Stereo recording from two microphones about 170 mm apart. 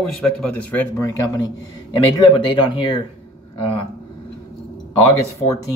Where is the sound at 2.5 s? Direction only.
30° left (ahead or behind).